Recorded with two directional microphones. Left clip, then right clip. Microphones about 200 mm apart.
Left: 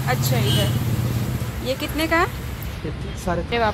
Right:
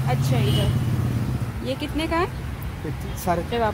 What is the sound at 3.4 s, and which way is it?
Speech, 15° right (ahead or behind).